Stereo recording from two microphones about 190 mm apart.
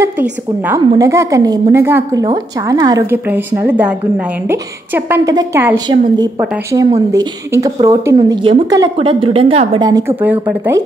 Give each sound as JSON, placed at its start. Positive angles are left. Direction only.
{"t": 0.0, "sound": "a woman's voice", "side_deg": -10}
{"t": 8.9, "sound": "a woman's voice", "side_deg": -30}